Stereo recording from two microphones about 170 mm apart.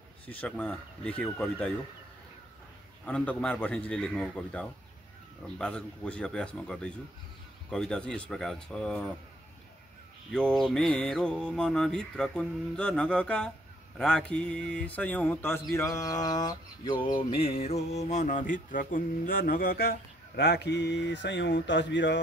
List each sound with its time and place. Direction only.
0.3 s speech: 10° left (ahead or behind)
3.1 s speech: 5° left (ahead or behind)
5.6 s mantra: 5° left (ahead or behind)
10.3 s mantra: 5° left (ahead or behind)
13.9 s speech: 5° left (ahead or behind)
15.7 s a sound: 20° left (ahead or behind); by 22.2 s 90° left